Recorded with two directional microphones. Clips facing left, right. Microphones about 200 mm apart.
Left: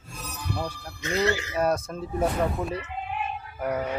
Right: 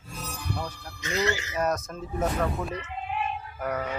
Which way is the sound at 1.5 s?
30° left (ahead or behind).